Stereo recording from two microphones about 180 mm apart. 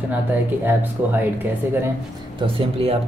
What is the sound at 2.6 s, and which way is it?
Speech, 35° right (ahead or behind).